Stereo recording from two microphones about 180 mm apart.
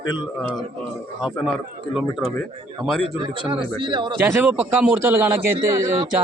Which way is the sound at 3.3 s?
30° right (ahead or behind).